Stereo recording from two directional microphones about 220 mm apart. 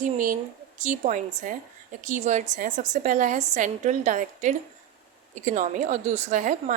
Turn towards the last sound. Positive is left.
turn(degrees=-35)  # may be behind; listen again after turning